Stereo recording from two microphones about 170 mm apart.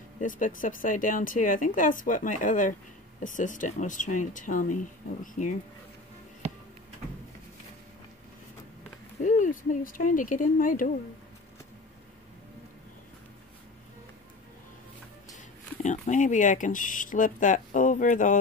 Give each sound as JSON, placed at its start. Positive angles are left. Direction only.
{"t": 0.2, "sound": "speech", "side_deg": 50}
{"t": 9.2, "sound": "speech", "side_deg": 50}
{"t": 15.8, "sound": "speech", "side_deg": 45}